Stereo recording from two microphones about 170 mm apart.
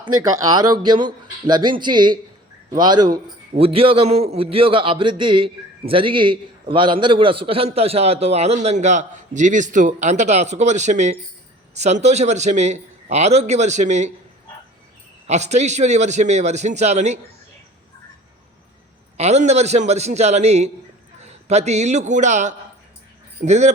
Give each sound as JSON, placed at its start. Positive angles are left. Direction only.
{"t": 0.0, "sound": "a man's voice", "side_deg": -20}
{"t": 15.3, "sound": "a man's voice", "side_deg": -40}
{"t": 19.1, "sound": "a man's voice", "side_deg": -40}